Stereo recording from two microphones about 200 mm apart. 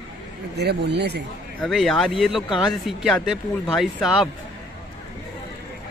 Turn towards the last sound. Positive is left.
turn(degrees=0)  # may be behind; listen again after turning